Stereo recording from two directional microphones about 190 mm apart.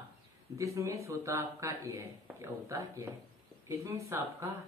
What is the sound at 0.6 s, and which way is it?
Speech, 15° right (ahead or behind).